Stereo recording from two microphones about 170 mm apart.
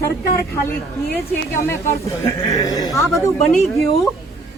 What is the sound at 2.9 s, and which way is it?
Speech, centre (ahead or behind).